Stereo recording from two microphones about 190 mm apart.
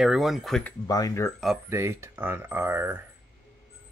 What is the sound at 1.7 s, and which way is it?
Speech, 15° right (ahead or behind).